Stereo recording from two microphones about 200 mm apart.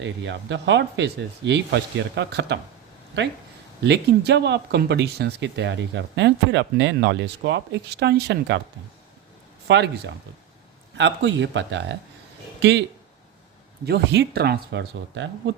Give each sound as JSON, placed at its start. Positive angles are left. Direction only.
{"t": 0.0, "sound": "speech", "side_deg": -65}
{"t": 3.8, "sound": "speech", "side_deg": -55}
{"t": 9.6, "sound": "speech", "side_deg": -60}
{"t": 13.8, "sound": "speech", "side_deg": -55}